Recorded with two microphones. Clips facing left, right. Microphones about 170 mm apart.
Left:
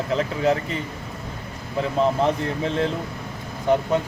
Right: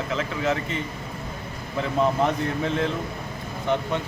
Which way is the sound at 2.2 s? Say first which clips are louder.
Left 2 dB; 35° left (ahead or behind).